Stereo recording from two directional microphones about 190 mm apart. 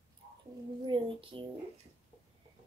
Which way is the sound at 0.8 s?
25° right (ahead or behind).